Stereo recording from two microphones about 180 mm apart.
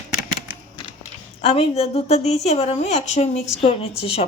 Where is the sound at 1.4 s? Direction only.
30° left (ahead or behind).